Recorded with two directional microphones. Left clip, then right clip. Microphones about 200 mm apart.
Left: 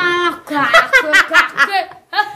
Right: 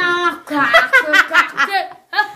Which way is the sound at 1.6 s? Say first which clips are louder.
Left 1 dB; 10° right (ahead or behind).